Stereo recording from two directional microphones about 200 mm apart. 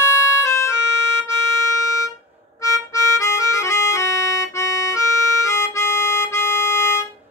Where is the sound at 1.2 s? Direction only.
15° left (ahead or behind).